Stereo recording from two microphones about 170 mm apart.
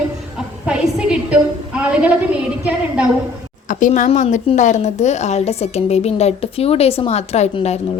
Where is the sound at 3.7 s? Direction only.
50° left (ahead or behind).